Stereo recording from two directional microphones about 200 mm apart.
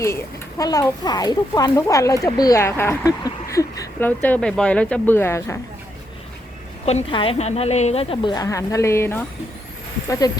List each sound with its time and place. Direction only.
0.0 s a child's voice: 15° left (ahead or behind)
6.8 s a woman's voice: 30° left (ahead or behind)